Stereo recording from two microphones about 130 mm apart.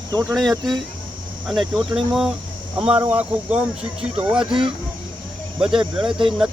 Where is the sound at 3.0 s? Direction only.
15° right (ahead or behind).